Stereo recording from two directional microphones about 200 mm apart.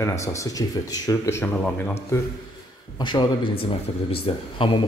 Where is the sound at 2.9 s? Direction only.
20° left (ahead or behind).